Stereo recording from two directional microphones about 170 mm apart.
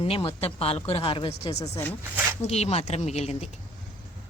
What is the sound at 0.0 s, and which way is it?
Speech, 35° left (ahead or behind).